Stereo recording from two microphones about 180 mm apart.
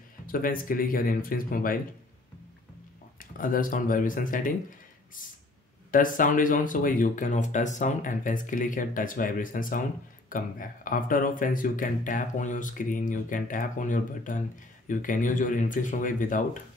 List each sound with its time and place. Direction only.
0.3 s speech: 50° left (ahead or behind)
3.2 s speech: 50° left (ahead or behind)
5.9 s speech: 50° left (ahead or behind)